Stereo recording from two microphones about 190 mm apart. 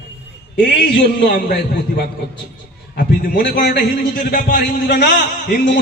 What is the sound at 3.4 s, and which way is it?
A man's voice, 55° left (ahead or behind).